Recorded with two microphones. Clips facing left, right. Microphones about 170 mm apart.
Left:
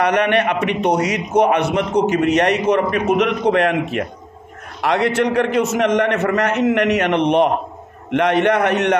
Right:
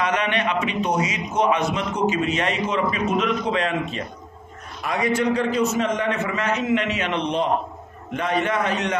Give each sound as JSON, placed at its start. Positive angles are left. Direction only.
{"t": 0.0, "sound": "a man's voice", "side_deg": 65}